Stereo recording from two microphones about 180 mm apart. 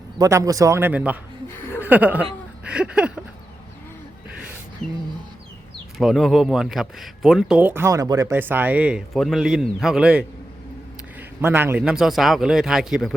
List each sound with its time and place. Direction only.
0.2 s a man's voice: 20° right (ahead or behind)
6.0 s speech: centre (ahead or behind)
11.3 s speech: 10° right (ahead or behind)